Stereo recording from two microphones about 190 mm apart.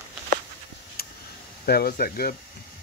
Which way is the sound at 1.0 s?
55° left (ahead or behind).